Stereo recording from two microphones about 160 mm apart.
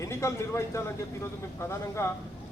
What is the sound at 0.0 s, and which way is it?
A man's voice, 15° left (ahead or behind).